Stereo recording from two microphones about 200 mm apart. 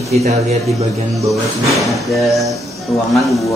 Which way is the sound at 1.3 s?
Centre (ahead or behind).